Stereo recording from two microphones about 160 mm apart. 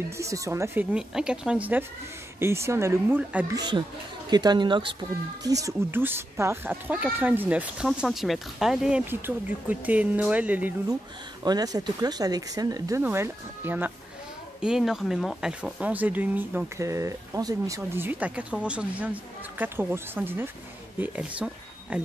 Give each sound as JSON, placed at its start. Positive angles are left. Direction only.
{"t": 0.2, "sound": "speech", "side_deg": -20}
{"t": 0.9, "sound": "speech", "side_deg": -5}
{"t": 3.5, "sound": "speech", "side_deg": -25}
{"t": 11.4, "sound": "speech", "side_deg": -25}